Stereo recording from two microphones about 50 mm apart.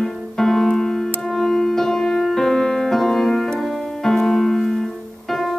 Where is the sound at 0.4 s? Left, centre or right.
Centre.